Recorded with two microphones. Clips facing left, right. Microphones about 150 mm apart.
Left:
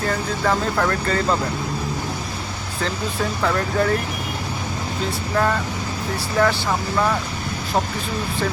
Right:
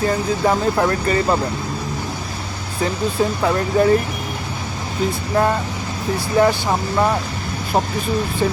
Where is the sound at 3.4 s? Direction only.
20° right (ahead or behind).